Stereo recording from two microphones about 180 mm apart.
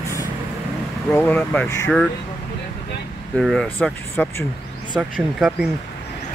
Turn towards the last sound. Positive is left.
turn(degrees=0)  # may be behind; listen again after turning